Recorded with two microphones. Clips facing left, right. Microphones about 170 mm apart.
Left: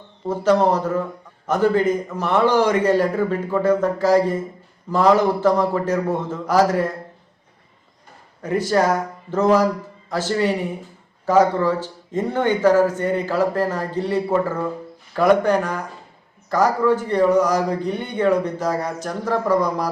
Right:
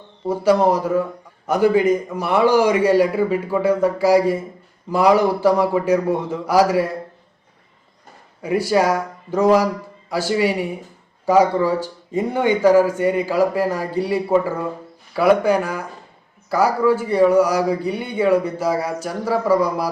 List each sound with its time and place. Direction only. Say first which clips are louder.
0.3 s a man's voice: right 1 dB; 10° right (ahead or behind)
8.4 s a man's voice: right 1 dB; 10° right (ahead or behind)